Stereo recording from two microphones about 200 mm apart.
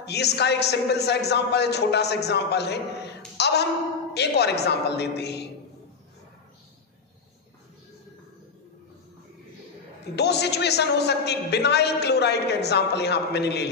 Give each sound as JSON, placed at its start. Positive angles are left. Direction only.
{"t": 0.0, "sound": "a man's voice", "side_deg": 55}
{"t": 3.3, "sound": "a sound", "side_deg": 55}
{"t": 4.1, "sound": "a man's voice", "side_deg": 55}
{"t": 10.1, "sound": "a man's voice", "side_deg": 55}